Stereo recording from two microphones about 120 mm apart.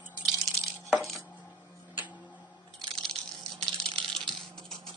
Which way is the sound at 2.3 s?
5° left (ahead or behind).